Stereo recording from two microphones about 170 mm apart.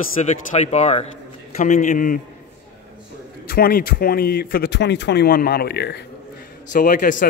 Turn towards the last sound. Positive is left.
turn(degrees=50)  # may be behind; listen again after turning